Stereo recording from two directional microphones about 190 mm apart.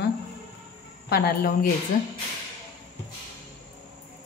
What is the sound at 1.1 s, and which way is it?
Speech, 50° left (ahead or behind).